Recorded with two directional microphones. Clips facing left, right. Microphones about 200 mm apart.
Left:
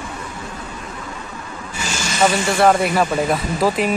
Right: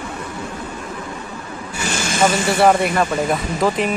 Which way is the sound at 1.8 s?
55° right (ahead or behind).